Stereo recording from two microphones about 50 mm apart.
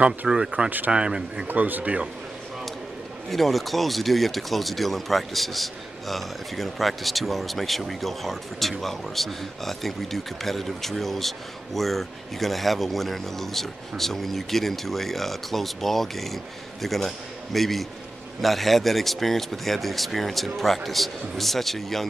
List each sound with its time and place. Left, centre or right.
0.2 s speech: centre
0.7 s speech: right
0.9 s speech: centre
1.5 s speech: right
3.3 s speech: centre